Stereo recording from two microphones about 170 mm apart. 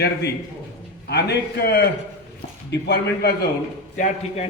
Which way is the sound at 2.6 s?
85° left.